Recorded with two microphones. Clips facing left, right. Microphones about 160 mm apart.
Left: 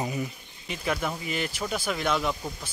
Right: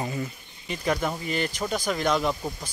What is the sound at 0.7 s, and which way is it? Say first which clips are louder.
Speech: right 3 dB; centre (ahead or behind).